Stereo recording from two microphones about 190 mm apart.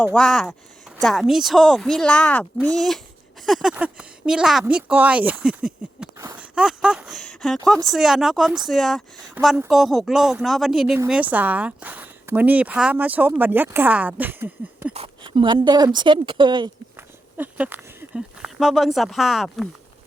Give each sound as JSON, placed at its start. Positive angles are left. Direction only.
{"t": 0.0, "sound": "a woman's voice", "side_deg": 5}
{"t": 6.1, "sound": "a sound", "side_deg": -15}
{"t": 6.5, "sound": "a woman's voice", "side_deg": -5}
{"t": 14.9, "sound": "speech", "side_deg": -25}
{"t": 17.3, "sound": "speech", "side_deg": -10}